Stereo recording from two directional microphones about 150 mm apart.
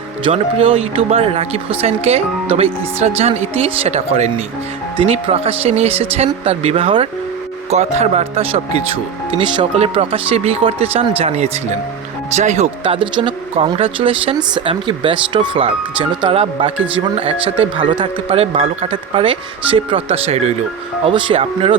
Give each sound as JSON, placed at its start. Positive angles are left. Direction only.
{"t": 0.3, "sound": "speech", "side_deg": -40}